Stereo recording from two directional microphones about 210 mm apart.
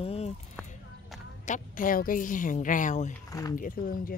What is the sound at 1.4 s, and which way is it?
A woman's voice, 40° left (ahead or behind).